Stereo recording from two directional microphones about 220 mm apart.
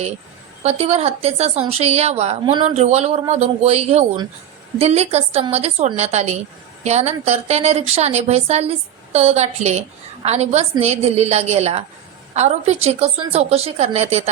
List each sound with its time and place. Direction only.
0.6 s a woman's voice: 30° right (ahead or behind)